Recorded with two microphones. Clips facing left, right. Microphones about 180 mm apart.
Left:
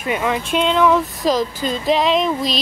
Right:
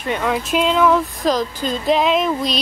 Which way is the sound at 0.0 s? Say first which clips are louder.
Even; 5° left (ahead or behind).